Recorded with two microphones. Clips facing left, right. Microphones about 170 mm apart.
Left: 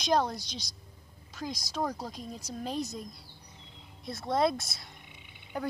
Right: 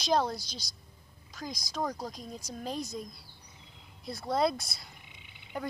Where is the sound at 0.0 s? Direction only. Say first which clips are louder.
Left 1 dB; centre (ahead or behind).